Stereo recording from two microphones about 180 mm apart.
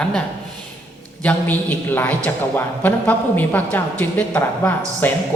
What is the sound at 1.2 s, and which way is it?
A man's voice, 10° left (ahead or behind).